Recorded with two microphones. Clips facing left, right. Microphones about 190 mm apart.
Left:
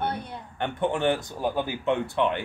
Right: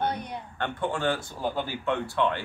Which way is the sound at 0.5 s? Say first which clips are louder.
Left 4 dB; 15° left (ahead or behind).